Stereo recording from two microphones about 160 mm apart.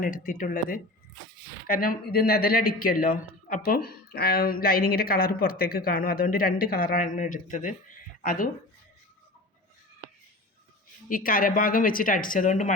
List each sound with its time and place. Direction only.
0.0 s speech: 55° left (ahead or behind)
11.1 s speech: 60° left (ahead or behind)